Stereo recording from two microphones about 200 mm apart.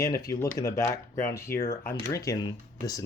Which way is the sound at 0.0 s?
20° left (ahead or behind).